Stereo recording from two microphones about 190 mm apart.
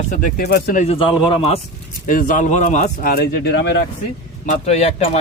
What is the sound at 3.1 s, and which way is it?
Speech, 60° left (ahead or behind).